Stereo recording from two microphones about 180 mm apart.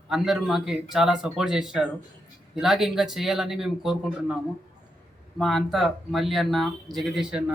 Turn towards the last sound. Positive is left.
turn(degrees=-5)  # may be behind; listen again after turning